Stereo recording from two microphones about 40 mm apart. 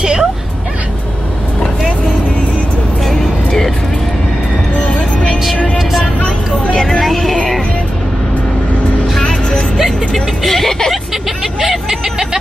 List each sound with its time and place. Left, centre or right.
0.0 s music: centre
3.1 s vehicle: centre
6.7 s vehicle: centre
7.1 s music: centre
10.4 s vehicle: centre
11.6 s vehicle: centre